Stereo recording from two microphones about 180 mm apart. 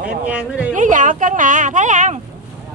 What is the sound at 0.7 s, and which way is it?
Speech, 45° right (ahead or behind).